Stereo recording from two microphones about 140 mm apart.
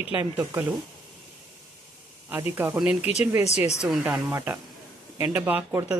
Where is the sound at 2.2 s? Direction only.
15° right (ahead or behind).